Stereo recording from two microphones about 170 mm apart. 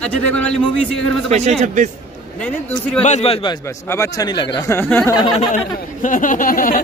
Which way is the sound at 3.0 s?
40° left (ahead or behind).